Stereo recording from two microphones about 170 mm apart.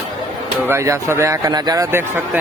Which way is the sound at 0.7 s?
15° right (ahead or behind).